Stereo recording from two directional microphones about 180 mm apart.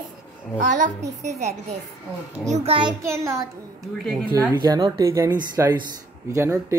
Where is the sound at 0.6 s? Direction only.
45° right (ahead or behind).